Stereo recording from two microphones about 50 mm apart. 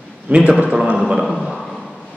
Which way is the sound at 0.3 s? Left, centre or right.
Right.